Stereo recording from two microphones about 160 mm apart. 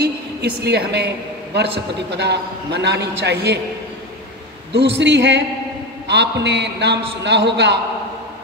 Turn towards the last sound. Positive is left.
turn(degrees=-90)